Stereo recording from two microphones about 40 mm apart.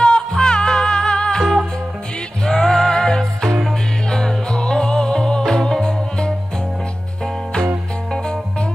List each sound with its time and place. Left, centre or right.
0.0 s music: left
2.4 s music: centre